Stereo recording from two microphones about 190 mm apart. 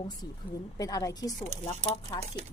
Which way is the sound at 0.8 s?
20° left (ahead or behind).